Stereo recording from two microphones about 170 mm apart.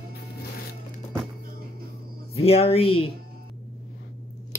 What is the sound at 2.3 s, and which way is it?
Speech, 35° left (ahead or behind).